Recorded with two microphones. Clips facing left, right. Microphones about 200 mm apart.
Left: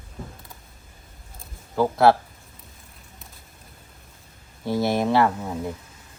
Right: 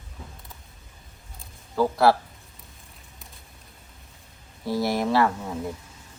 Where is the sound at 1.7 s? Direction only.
20° left (ahead or behind).